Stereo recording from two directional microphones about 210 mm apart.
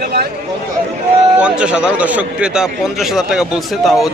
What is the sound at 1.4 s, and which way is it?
A man's voice, 5° right (ahead or behind).